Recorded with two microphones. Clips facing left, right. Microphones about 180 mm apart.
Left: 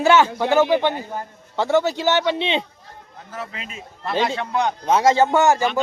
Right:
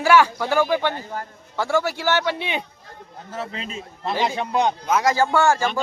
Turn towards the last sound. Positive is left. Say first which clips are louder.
# left 2 dB
turn(degrees=20)  # may be behind; listen again after turning